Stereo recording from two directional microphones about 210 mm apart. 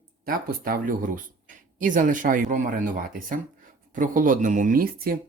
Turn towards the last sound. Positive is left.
turn(degrees=-45)  # may be behind; listen again after turning